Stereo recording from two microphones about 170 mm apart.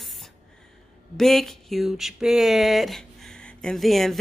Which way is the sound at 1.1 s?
Centre (ahead or behind).